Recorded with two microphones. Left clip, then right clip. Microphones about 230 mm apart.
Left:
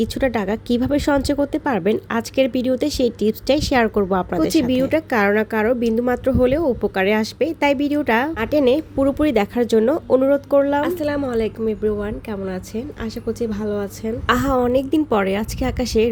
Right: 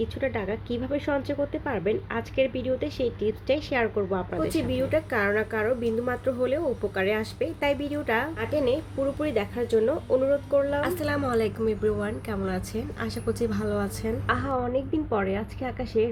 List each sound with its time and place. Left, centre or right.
0.0 s speech: left
10.8 s a woman's voice: left
14.3 s a woman's voice: left